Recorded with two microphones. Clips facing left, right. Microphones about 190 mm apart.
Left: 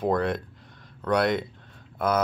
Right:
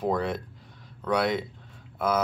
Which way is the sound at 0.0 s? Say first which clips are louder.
Left 2 dB; 5° right (ahead or behind).